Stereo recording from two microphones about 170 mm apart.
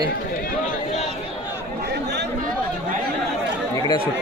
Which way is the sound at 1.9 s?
80° right.